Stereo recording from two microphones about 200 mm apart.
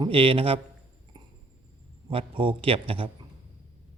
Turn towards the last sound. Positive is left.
turn(degrees=-25)  # may be behind; listen again after turning